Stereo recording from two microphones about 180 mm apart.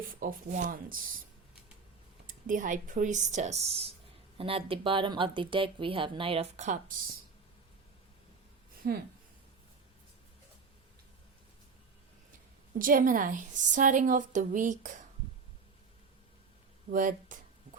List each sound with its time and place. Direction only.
0.1 s a woman's voice: 50° right (ahead or behind)
2.2 s a woman's voice: 45° right (ahead or behind)
8.8 s speech: 60° right (ahead or behind)
12.8 s a woman's voice: 50° right (ahead or behind)
16.9 s a woman's voice: 50° right (ahead or behind)